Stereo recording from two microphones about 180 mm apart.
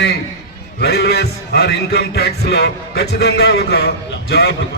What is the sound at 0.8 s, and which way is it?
A man's voice, 65° left (ahead or behind).